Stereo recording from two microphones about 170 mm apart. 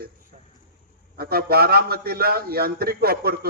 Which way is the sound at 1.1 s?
65° right (ahead or behind).